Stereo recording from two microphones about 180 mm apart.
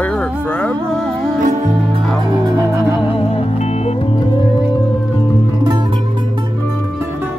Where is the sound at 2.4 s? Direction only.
20° right (ahead or behind).